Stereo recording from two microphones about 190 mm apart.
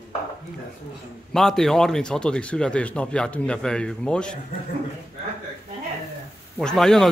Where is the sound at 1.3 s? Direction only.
Centre (ahead or behind).